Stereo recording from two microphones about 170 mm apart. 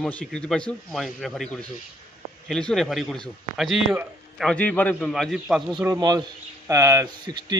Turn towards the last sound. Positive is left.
turn(degrees=-25)  # may be behind; listen again after turning